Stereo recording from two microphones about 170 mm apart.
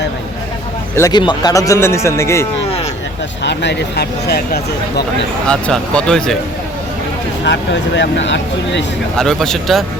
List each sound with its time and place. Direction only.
0.9 s a man's voice: 20° left (ahead or behind)
3.4 s speech: 90° left; by 5.0 s 70° left (ahead or behind)
5.5 s speech: 5° left (ahead or behind)
7.4 s speech: 90° left
9.1 s speech: 5° left (ahead or behind)